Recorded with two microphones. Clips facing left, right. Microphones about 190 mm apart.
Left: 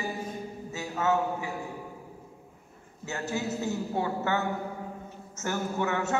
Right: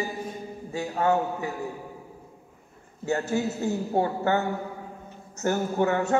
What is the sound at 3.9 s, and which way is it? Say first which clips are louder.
Speech: right 6 dB; 40° right (ahead or behind).